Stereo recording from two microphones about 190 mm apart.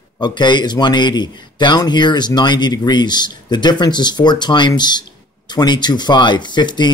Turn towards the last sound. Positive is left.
turn(degrees=25)  # may be behind; listen again after turning